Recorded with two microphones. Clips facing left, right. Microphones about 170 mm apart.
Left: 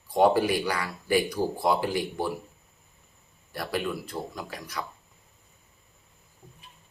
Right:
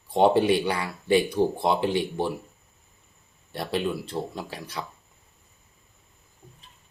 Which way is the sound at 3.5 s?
25° right (ahead or behind).